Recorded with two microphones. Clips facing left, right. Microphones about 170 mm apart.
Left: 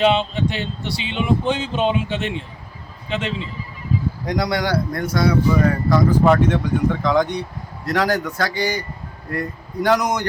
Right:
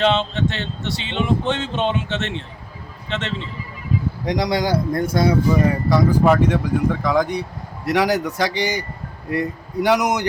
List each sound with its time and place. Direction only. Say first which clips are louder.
0.0 s speech: left 1 dB; 10° left (ahead or behind)
4.3 s speech: right 1 dB; 20° right (ahead or behind)
5.9 s a man's voice: even; 5° right (ahead or behind)